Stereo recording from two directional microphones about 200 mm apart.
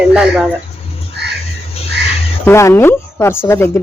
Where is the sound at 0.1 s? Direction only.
5° right (ahead or behind).